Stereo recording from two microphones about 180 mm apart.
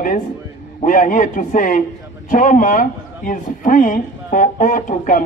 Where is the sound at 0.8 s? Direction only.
45° left (ahead or behind).